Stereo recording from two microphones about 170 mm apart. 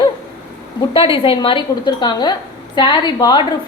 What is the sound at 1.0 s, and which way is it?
A woman's voice, 30° left (ahead or behind).